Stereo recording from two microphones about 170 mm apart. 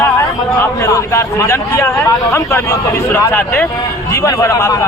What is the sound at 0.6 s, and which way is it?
A man's voice, 15° left (ahead or behind).